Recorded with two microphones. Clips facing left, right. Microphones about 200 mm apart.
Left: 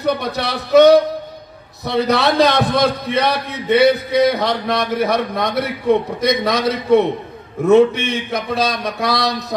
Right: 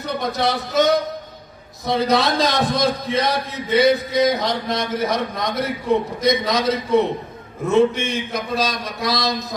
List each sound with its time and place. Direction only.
0.0 s a man's voice: 65° left (ahead or behind)